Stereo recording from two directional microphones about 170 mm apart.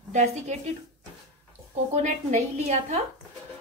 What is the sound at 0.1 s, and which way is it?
Speech, 40° right (ahead or behind).